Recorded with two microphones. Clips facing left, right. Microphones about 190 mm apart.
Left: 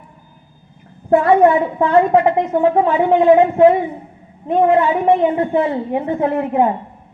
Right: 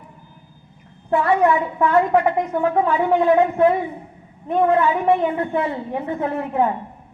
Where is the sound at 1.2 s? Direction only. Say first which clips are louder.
Left 4 dB; 30° left (ahead or behind).